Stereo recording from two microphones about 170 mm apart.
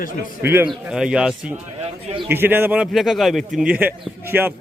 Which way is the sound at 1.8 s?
35° right (ahead or behind).